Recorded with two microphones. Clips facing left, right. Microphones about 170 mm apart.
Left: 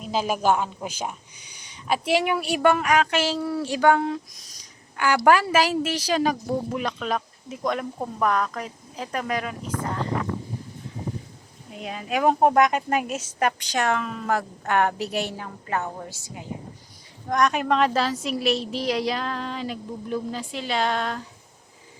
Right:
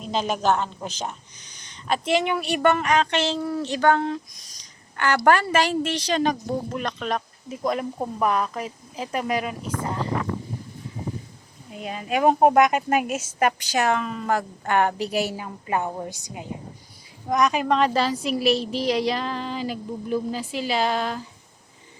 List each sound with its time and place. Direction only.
0.0 s a woman's voice: 5° left (ahead or behind); by 10.0 s 10° right (ahead or behind)
11.7 s a woman's voice: centre (ahead or behind)
15.6 s a woman's voice: 15° right (ahead or behind)
17.2 s a woman's voice: centre (ahead or behind)